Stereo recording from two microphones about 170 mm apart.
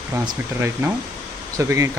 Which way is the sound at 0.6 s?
15° right (ahead or behind).